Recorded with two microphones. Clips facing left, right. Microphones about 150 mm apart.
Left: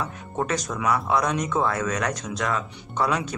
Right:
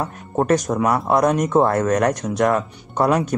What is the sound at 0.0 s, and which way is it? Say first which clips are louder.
Speech: right 6 dB; 50° right (ahead or behind).